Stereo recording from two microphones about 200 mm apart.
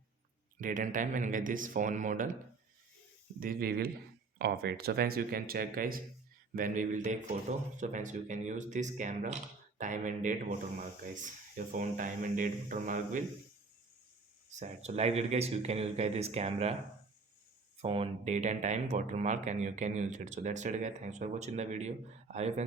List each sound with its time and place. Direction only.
0.6 s speech: 40° right (ahead or behind)
3.4 s speech: 50° right (ahead or behind)
14.6 s speech: 35° right (ahead or behind)
17.8 s speech: 25° right (ahead or behind)